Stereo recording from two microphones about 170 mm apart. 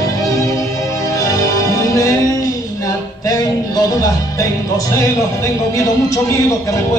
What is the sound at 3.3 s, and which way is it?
Music, 20° left (ahead or behind).